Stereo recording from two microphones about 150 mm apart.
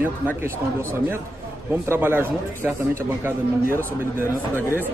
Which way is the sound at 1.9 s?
15° right (ahead or behind).